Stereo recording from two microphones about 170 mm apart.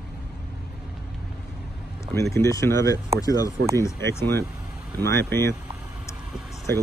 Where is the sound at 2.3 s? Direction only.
15° left (ahead or behind).